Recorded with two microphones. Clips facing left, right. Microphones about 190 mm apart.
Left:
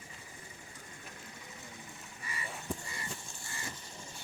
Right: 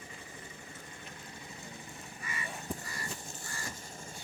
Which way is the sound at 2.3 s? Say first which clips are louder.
Right 2 dB; 35° left (ahead or behind).